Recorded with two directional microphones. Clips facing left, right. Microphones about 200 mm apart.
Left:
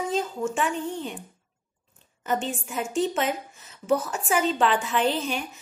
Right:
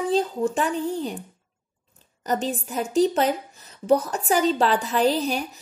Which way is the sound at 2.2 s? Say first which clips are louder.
Right 2 dB; 40° right (ahead or behind).